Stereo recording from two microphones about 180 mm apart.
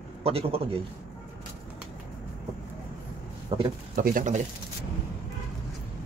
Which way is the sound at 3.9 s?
50° right (ahead or behind).